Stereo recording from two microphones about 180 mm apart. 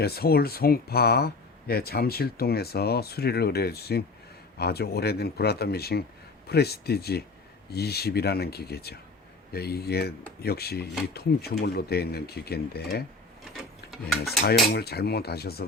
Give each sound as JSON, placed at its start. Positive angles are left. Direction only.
{"t": 0.0, "sound": "speech", "side_deg": 60}
{"t": 14.7, "sound": "speech", "side_deg": 65}